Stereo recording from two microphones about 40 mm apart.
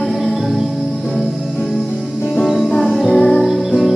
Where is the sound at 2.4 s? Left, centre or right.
Centre.